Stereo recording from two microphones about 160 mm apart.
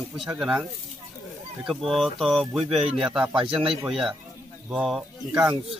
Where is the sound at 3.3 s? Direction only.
35° right (ahead or behind).